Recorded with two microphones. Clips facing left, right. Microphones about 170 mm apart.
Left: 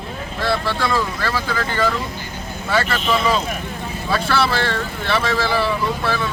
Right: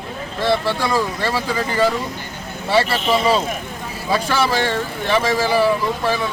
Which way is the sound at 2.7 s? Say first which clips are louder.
Right 3 dB; 30° right (ahead or behind).